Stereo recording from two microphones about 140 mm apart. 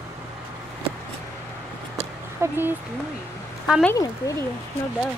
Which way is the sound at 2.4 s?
15° right (ahead or behind).